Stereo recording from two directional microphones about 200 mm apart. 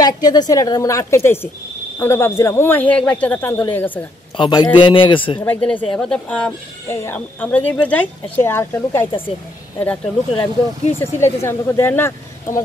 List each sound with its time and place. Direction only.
0.0 s speech: 20° left (ahead or behind)
4.4 s a man's voice: 20° left (ahead or behind)
5.4 s speech: 10° left (ahead or behind)